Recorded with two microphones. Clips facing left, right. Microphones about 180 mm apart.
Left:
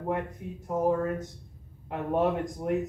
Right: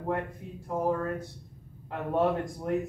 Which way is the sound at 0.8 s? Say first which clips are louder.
Left 3 dB; 15° left (ahead or behind).